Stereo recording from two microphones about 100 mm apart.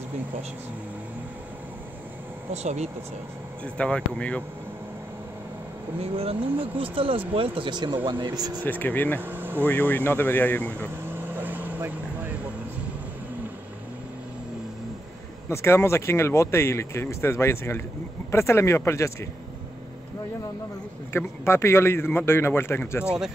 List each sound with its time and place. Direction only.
2.5 s speech: 90° right
3.6 s speech: 10° left (ahead or behind)
5.9 s speech: 75° right (ahead or behind); by 8.5 s 45° right (ahead or behind)
8.6 s speech: 20° left (ahead or behind)
9.2 s air conditioning: 20° right (ahead or behind)
9.7 s speech: 20° left (ahead or behind)
11.1 s vehicle: 20° right (ahead or behind)
15.5 s speech: 25° left (ahead or behind)
21.1 s speech: 25° left (ahead or behind)